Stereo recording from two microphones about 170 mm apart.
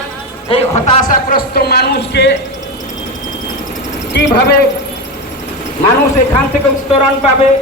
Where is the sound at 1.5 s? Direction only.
70° left (ahead or behind).